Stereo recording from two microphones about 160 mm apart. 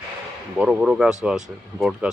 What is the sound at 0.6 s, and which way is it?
Speech, 5° right (ahead or behind).